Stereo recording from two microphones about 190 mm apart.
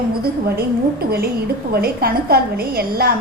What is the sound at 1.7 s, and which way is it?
A woman's voice, 55° right (ahead or behind).